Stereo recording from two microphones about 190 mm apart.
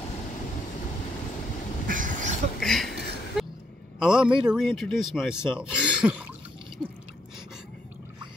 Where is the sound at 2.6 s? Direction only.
Centre (ahead or behind).